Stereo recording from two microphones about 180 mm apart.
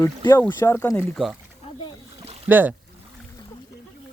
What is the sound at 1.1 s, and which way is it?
Speech, centre (ahead or behind).